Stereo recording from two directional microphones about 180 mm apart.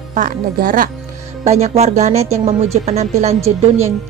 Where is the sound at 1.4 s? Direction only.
35° right (ahead or behind).